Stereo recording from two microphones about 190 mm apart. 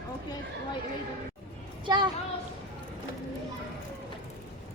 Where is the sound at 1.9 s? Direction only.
20° right (ahead or behind).